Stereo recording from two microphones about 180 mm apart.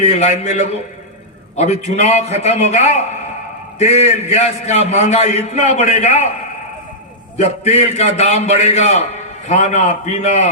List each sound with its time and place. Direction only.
0.0 s a man's voice: 40° left (ahead or behind)
7.4 s a man's voice: 40° left (ahead or behind)